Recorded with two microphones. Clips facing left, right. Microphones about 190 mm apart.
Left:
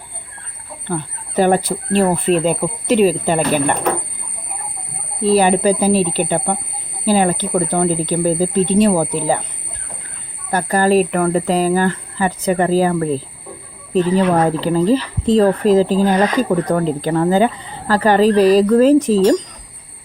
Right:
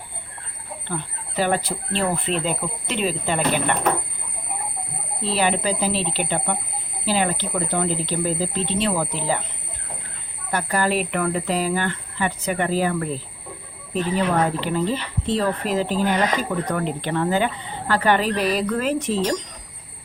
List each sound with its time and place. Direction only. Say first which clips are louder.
0.9 s speech: left 7 dB; 50° left (ahead or behind)
5.2 s speech: left 9 dB; 45° left (ahead or behind)
10.5 s speech: left 8 dB; 40° left (ahead or behind)